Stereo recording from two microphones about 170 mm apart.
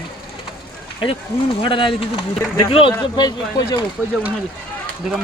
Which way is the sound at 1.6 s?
30° left (ahead or behind).